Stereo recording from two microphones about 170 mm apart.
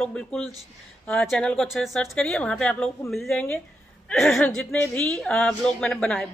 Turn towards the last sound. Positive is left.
turn(degrees=5)  # may be behind; listen again after turning